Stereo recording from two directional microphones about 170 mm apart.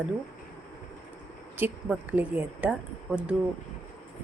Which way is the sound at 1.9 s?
10° right (ahead or behind).